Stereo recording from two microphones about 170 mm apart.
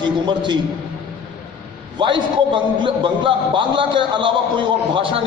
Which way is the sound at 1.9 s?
30° right (ahead or behind).